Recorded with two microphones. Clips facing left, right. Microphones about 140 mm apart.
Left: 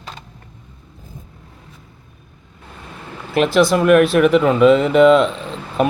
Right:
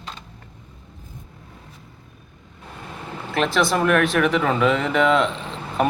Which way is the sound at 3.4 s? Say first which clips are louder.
Left 6 dB; centre (ahead or behind).